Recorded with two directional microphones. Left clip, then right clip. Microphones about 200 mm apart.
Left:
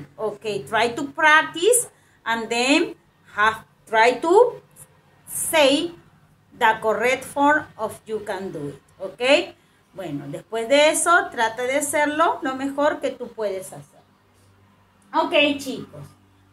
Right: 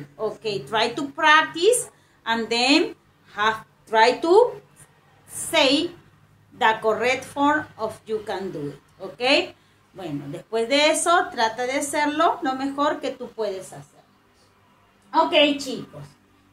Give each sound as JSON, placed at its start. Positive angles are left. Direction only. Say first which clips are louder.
{"t": 0.2, "sound": "a woman's voice", "louder": "left 1 dB", "side_deg": 15}
{"t": 15.0, "sound": "a woman's voice", "louder": "right 1 dB", "side_deg": 15}